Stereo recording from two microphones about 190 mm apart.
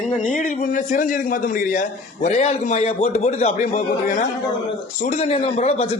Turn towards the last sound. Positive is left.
turn(degrees=30)  # may be behind; listen again after turning